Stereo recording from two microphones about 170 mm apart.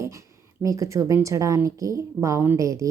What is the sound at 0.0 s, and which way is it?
A woman's voice, 20° right (ahead or behind).